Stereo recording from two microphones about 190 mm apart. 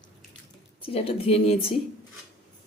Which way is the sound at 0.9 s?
30° left (ahead or behind).